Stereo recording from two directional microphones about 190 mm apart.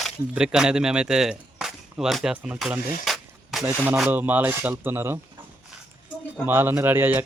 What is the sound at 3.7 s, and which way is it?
Rub, 5° right (ahead or behind).